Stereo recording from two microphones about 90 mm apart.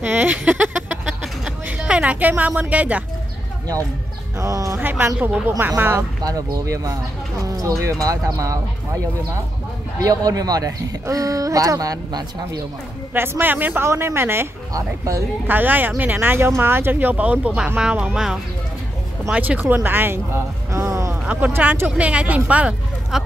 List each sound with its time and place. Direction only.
0.0 s a sound: 20° right (ahead or behind)
1.0 s a sound: 5° right (ahead or behind)
1.8 s a woman's voice: 10° right (ahead or behind)
4.4 s speech: 40° right (ahead or behind)
4.7 s speech: 25° right (ahead or behind)
5.9 s speech: 40° right (ahead or behind)
9.9 s speech: 40° right (ahead or behind)
13.1 s speech: 25° right (ahead or behind)
14.7 s speech: 40° right (ahead or behind)
15.4 s speech: 20° right (ahead or behind); by 18.4 s 5° right (ahead or behind)
19.3 s speech: 15° right (ahead or behind); by 21.2 s 35° right (ahead or behind)
21.3 s speech: 20° right (ahead or behind)
23.1 s speech: 5° right (ahead or behind)